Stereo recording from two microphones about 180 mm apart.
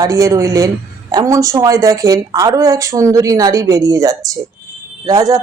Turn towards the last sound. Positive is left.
turn(degrees=-20)  # may be behind; listen again after turning